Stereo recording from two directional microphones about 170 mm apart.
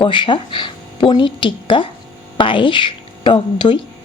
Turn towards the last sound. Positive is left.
turn(degrees=30)  # may be behind; listen again after turning